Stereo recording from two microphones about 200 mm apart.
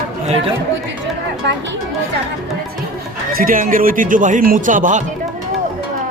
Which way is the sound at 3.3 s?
45° right (ahead or behind).